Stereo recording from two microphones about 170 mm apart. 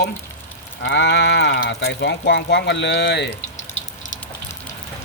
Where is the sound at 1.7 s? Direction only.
80° left.